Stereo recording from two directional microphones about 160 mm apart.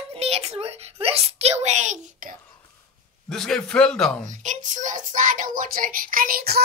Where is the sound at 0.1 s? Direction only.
40° right (ahead or behind).